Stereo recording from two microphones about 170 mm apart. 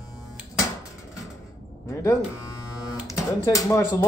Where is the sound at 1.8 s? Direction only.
15° left (ahead or behind).